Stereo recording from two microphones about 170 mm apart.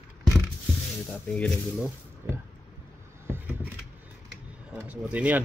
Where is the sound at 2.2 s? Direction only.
15° right (ahead or behind).